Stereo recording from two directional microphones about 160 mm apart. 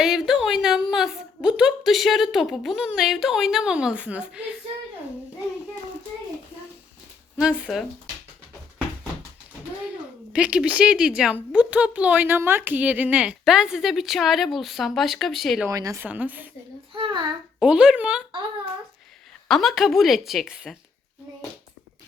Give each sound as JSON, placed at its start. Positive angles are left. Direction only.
{"t": 0.0, "sound": "a woman's voice", "side_deg": -5}
{"t": 7.3, "sound": "speech", "side_deg": -5}
{"t": 10.3, "sound": "speech", "side_deg": -5}
{"t": 15.6, "sound": "a woman's voice", "side_deg": -20}
{"t": 16.9, "sound": "a child's voice", "side_deg": -30}
{"t": 17.6, "sound": "speech", "side_deg": -5}
{"t": 19.5, "sound": "speech", "side_deg": 0}